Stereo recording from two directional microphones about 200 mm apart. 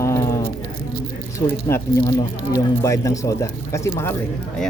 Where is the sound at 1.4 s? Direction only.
25° left (ahead or behind).